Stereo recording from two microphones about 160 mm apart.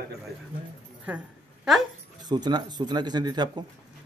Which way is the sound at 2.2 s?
25° right (ahead or behind).